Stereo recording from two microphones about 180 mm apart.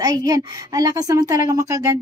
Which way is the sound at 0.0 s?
20° right (ahead or behind).